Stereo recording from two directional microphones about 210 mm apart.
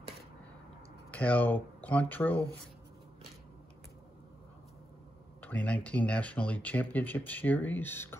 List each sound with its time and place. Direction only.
1.1 s speech: 5° left (ahead or behind)
5.4 s speech: 10° left (ahead or behind)